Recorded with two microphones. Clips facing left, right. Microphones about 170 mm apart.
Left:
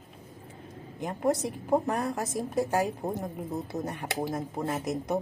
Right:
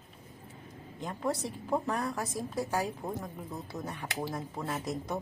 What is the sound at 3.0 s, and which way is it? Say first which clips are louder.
Speech: left 5 dB; 25° left (ahead or behind).